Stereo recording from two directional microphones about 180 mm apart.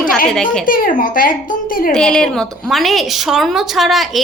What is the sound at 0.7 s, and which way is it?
Speech, 50° left (ahead or behind).